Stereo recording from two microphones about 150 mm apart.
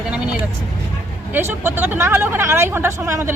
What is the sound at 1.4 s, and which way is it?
Speech, 15° right (ahead or behind).